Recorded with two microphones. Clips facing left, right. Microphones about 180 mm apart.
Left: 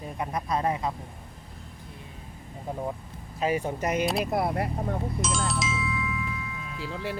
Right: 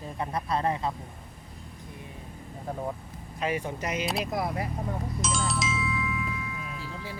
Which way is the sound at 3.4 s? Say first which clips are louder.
Left 4 dB; 40° left (ahead or behind).